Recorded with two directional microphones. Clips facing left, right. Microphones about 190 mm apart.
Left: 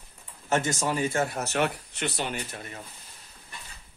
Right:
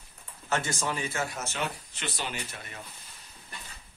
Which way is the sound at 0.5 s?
40° left (ahead or behind).